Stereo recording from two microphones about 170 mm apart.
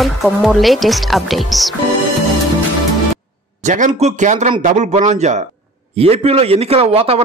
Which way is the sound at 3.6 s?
45° right (ahead or behind).